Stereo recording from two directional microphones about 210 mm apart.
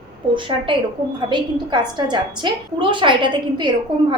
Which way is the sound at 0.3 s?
25° right (ahead or behind).